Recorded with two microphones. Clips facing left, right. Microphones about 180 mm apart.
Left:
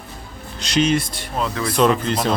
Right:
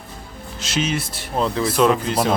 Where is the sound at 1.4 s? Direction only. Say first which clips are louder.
Right 3 dB; 30° right (ahead or behind).